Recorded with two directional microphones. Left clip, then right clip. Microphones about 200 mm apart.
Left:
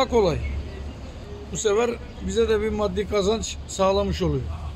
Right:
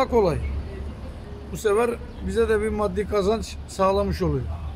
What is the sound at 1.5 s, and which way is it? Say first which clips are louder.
A man's voice: even; 10° right (ahead or behind).